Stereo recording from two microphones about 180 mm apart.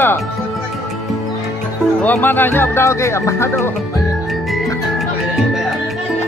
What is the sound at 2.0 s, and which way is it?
Speech, 10° left (ahead or behind).